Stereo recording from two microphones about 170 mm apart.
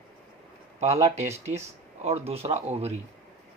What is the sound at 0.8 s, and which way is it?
Speech, 35° right (ahead or behind).